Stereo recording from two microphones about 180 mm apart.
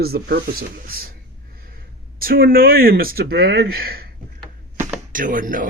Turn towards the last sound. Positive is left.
turn(degrees=-50)  # may be behind; listen again after turning